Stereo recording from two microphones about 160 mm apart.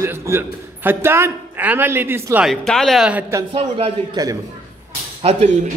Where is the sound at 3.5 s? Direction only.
35° right (ahead or behind).